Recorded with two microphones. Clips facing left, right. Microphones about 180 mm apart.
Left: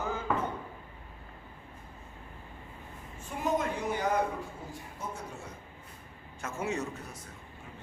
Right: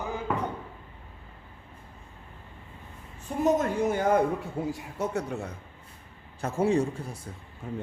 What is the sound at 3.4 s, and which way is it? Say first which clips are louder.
Speech: right 7 dB; 45° right (ahead or behind).